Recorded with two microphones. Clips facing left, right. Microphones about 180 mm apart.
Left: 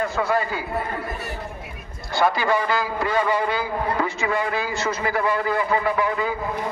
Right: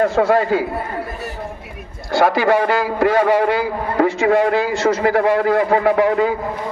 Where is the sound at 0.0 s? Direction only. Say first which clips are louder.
Right 8 dB; 90° right.